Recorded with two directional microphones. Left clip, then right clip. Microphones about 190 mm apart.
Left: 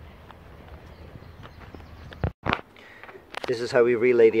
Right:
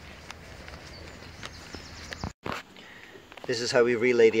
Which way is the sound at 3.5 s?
5° left (ahead or behind).